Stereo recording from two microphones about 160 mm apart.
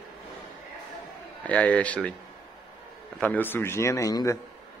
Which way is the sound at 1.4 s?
10° left (ahead or behind).